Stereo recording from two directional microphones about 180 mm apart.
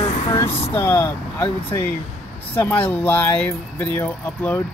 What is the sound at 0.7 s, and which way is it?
Speech, 10° left (ahead or behind).